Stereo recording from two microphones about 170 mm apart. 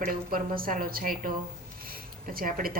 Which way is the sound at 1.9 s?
55° right (ahead or behind).